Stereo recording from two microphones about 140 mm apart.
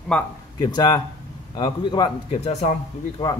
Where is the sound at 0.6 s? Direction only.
30° left (ahead or behind).